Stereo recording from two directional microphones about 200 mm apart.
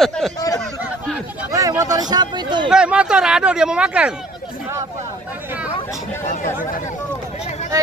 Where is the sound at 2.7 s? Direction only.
5° right (ahead or behind).